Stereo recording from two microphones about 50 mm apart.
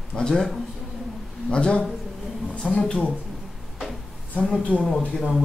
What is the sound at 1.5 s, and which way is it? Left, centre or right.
A woman's voice, centre.